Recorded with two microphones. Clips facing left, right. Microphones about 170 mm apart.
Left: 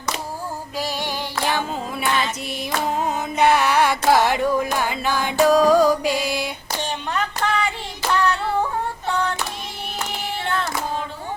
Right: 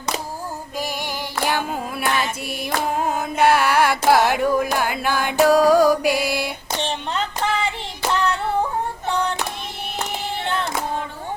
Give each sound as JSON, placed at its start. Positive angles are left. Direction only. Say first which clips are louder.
{"t": 0.8, "sound": "female singing", "louder": "left 1 dB", "side_deg": -15}
{"t": 3.0, "sound": "carnatic music", "louder": "right 1 dB", "side_deg": -5}
{"t": 5.4, "sound": "music", "louder": "right 1 dB", "side_deg": -10}
{"t": 6.7, "sound": "hands", "louder": "right 1 dB", "side_deg": -25}
{"t": 8.1, "sound": "a sound", "louder": "left 1 dB", "side_deg": -20}
{"t": 9.0, "sound": "child singing", "louder": "even", "side_deg": -20}
{"t": 10.4, "sound": "child singing", "louder": "even", "side_deg": -20}